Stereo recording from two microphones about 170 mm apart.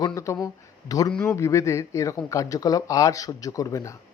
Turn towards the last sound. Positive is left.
turn(degrees=20)  # may be behind; listen again after turning